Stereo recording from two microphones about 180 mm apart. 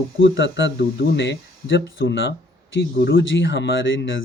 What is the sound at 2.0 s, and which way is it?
Speech, 85° left.